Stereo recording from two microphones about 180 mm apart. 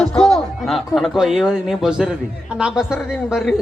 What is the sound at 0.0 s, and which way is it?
A child's voice, 5° left (ahead or behind).